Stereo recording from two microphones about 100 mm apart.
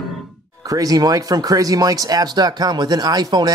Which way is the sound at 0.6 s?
40° right (ahead or behind).